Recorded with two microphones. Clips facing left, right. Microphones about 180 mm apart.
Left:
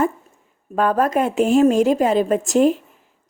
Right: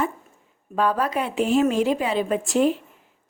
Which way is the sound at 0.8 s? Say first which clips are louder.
Left 5 dB; 50° left (ahead or behind).